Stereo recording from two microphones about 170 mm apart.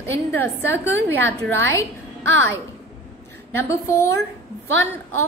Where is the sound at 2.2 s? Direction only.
90° right.